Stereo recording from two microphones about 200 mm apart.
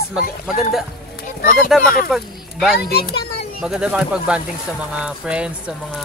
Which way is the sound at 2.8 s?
50° left (ahead or behind).